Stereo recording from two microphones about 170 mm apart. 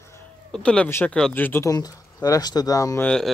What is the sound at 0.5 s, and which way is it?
Speech, 5° left (ahead or behind).